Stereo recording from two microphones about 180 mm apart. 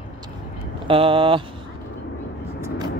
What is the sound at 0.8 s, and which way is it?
Speech, 30° right (ahead or behind).